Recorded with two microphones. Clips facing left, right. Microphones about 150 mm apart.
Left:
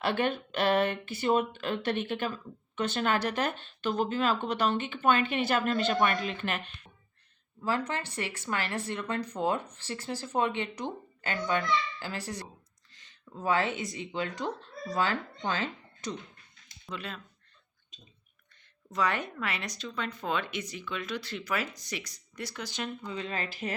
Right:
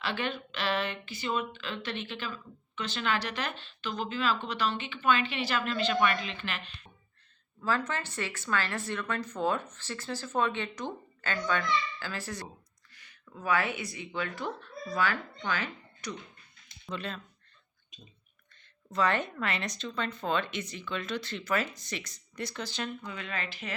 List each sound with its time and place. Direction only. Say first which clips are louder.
0.0 s speech: left 5 dB; 50° left (ahead or behind)
7.6 s speech: even; 15° left (ahead or behind)
12.9 s a sound: right 2 dB; 20° left (ahead or behind)
13.2 s speech: left 1 dB; 30° left (ahead or behind)
16.8 s speech: right 2 dB; 5° left (ahead or behind)
18.9 s speech: right 2 dB; 10° left (ahead or behind)
23.1 s speech: left 3 dB; 35° left (ahead or behind)